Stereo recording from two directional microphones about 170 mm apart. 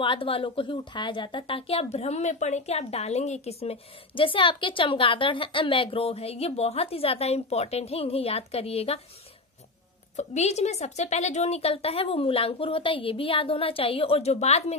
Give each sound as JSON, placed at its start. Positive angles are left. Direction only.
{"t": 0.0, "sound": "a woman's voice", "side_deg": 30}
{"t": 10.1, "sound": "a woman's voice", "side_deg": 40}